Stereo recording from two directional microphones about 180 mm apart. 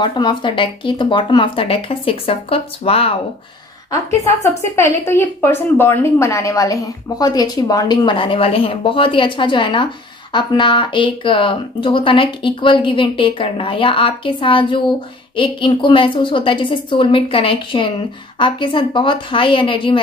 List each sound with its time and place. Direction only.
0.0 s a woman's voice: 25° left (ahead or behind)
3.9 s a woman's voice: 15° left (ahead or behind)